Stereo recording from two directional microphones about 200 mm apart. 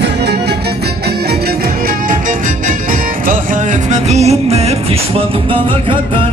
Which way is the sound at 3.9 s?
35° right (ahead or behind).